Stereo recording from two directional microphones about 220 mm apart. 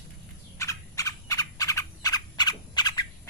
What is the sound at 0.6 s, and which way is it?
Frog, 15° left (ahead or behind).